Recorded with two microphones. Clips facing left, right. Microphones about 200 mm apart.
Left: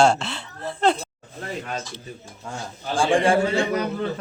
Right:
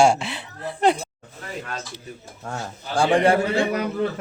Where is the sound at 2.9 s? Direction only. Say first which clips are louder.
Right 1 dB; 65° right (ahead or behind).